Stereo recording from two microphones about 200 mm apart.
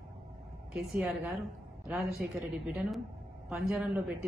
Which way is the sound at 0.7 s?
5° right (ahead or behind).